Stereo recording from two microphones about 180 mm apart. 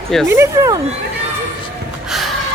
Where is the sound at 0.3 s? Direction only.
15° right (ahead or behind).